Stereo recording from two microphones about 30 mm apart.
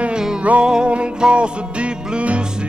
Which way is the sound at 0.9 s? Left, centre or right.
Right.